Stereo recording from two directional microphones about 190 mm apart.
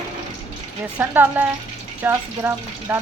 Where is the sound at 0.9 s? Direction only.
10° right (ahead or behind).